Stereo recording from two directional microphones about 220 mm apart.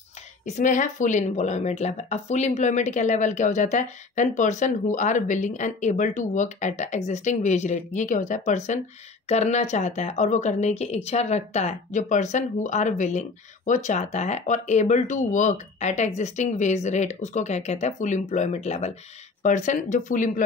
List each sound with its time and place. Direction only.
0.5 s a woman's voice: 35° left (ahead or behind)